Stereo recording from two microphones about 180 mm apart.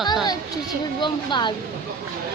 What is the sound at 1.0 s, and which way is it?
Speech, 25° left (ahead or behind).